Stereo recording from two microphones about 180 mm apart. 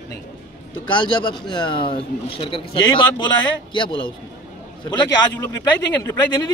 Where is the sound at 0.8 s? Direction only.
25° left (ahead or behind).